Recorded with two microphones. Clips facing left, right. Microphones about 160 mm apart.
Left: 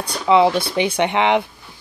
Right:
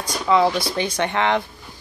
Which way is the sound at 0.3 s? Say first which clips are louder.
Left 3 dB; 20° left (ahead or behind).